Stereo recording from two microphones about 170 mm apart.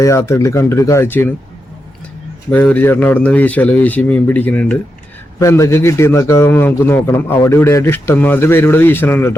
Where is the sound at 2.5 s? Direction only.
10° left (ahead or behind).